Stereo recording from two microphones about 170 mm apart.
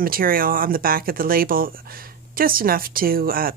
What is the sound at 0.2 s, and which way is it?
A woman's voice, 60° right (ahead or behind).